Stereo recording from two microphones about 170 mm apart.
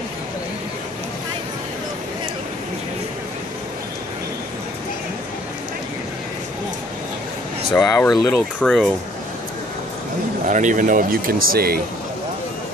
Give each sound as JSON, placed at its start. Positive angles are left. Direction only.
{"t": 7.7, "sound": "speech", "side_deg": 15}
{"t": 10.4, "sound": "speech", "side_deg": -50}